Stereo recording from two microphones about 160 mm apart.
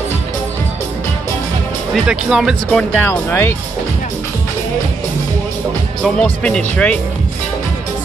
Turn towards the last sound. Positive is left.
turn(degrees=5)  # may be behind; listen again after turning